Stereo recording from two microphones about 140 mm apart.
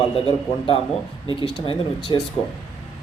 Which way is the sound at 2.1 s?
35° left (ahead or behind).